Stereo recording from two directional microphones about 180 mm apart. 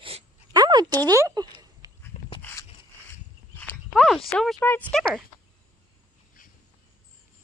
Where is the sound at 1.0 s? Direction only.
20° right (ahead or behind).